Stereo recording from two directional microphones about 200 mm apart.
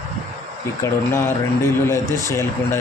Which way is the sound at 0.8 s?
10° left (ahead or behind).